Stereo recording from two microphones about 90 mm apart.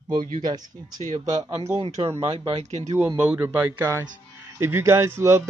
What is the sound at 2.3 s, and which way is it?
Speech, 90° right.